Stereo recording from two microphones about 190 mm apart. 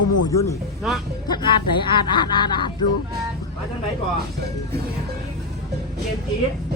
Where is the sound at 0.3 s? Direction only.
15° left (ahead or behind).